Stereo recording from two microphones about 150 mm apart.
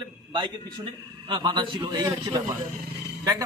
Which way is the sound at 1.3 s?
30° right (ahead or behind).